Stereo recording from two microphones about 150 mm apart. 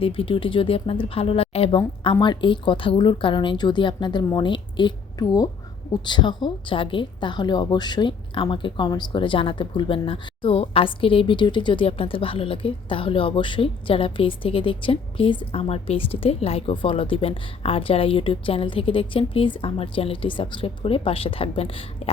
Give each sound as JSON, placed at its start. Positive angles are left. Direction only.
{"t": 0.0, "sound": "a woman's voice", "side_deg": 40}